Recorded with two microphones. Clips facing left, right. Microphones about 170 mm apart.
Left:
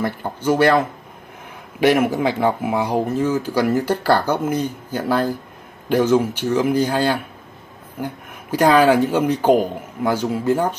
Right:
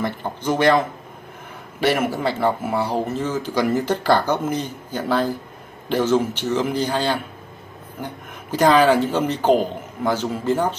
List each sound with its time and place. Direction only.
0.0 s speech: 10° left (ahead or behind)